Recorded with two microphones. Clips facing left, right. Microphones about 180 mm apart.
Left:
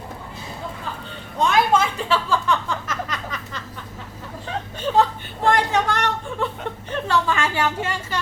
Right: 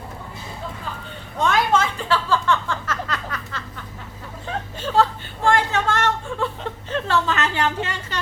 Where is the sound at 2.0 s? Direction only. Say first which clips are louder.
Even; 15° left (ahead or behind).